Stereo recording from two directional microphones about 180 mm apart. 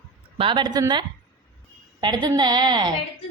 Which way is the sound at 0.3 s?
25° right (ahead or behind).